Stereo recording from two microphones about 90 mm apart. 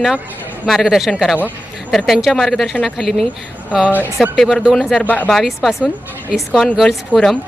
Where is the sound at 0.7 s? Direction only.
Centre (ahead or behind).